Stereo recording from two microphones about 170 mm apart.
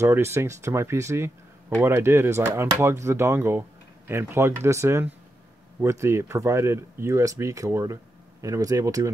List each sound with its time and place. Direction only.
0.0 s speech: 15° right (ahead or behind)